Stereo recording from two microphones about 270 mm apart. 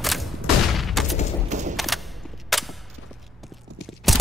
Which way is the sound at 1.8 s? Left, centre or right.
Centre.